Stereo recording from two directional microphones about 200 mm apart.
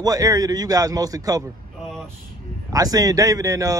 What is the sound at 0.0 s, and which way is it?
Speech, 15° right (ahead or behind).